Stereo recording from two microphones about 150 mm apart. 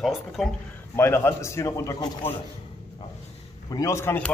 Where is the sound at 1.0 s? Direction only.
15° left (ahead or behind).